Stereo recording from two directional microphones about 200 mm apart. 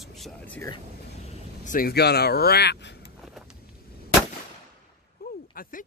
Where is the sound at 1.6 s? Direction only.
45° left (ahead or behind).